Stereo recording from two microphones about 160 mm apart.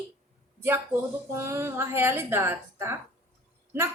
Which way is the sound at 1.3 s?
15° right (ahead or behind).